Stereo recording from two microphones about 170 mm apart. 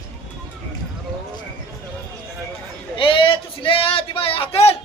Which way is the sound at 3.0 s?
30° left (ahead or behind).